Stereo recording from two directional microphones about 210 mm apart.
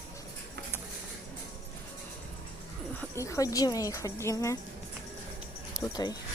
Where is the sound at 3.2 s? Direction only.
15° left (ahead or behind).